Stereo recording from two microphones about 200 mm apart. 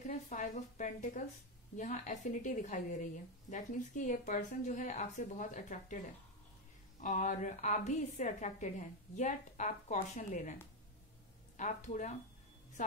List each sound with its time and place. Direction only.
0.0 s a woman's voice: 40° left (ahead or behind)
7.0 s a woman's voice: 40° left (ahead or behind)